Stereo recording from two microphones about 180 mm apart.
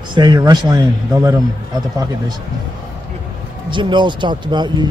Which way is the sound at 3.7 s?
25° right (ahead or behind).